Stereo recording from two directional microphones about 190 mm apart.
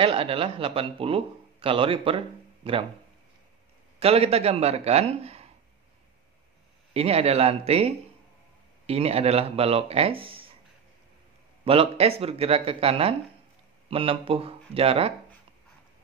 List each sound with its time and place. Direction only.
0.0 s a man's voice: 30° right (ahead or behind)
4.0 s a man's voice: 30° right (ahead or behind)
6.9 s a man's voice: 30° right (ahead or behind)
10.2 s a sound: 30° right (ahead or behind)
11.6 s a man's voice: 30° right (ahead or behind)